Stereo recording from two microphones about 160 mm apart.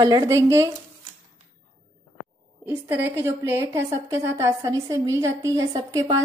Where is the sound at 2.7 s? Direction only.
15° right (ahead or behind).